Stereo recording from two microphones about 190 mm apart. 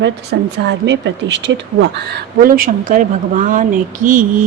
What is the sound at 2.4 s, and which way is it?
A woman's voice, 50° right (ahead or behind).